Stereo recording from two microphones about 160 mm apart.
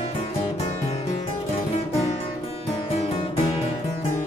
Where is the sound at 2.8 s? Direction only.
35° left (ahead or behind).